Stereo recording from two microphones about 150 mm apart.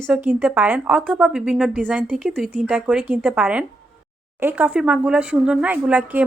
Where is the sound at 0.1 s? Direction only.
10° right (ahead or behind).